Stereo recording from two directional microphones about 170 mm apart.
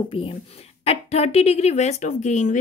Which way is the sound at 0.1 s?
30° left (ahead or behind).